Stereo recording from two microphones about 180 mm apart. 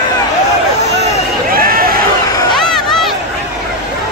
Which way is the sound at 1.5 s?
55° right (ahead or behind).